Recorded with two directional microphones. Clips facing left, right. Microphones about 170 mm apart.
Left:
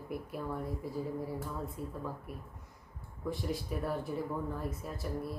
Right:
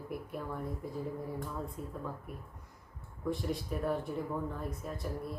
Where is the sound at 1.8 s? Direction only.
5° left (ahead or behind).